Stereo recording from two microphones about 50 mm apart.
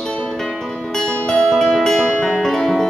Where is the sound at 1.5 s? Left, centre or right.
Centre.